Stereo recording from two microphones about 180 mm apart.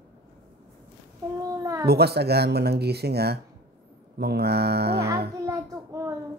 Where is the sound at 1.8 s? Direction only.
60° right (ahead or behind).